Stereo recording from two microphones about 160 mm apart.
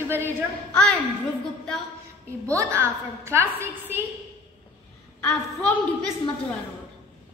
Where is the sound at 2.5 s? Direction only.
20° right (ahead or behind).